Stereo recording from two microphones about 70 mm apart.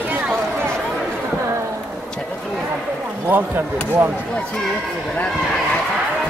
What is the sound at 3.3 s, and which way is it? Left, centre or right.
Speech, right.